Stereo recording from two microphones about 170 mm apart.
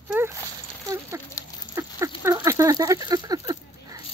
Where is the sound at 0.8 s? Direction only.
15° right (ahead or behind).